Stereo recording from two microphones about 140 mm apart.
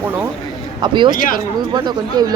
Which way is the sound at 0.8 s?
30° right (ahead or behind).